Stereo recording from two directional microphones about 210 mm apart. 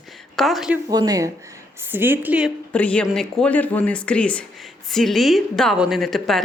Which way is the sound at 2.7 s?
5° left (ahead or behind).